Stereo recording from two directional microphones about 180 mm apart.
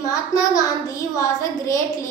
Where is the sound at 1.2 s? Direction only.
15° left (ahead or behind).